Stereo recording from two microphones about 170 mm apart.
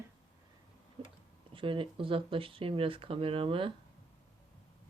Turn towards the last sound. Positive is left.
turn(degrees=-30)  # may be behind; listen again after turning